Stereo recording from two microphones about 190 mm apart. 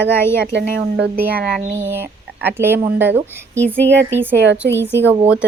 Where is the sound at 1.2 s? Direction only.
10° right (ahead or behind).